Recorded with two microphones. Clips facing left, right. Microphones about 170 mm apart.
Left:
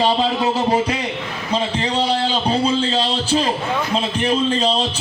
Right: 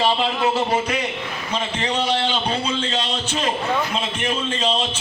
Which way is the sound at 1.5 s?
35° left (ahead or behind).